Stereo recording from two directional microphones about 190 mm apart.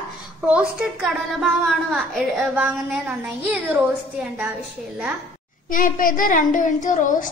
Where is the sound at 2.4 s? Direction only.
10° right (ahead or behind).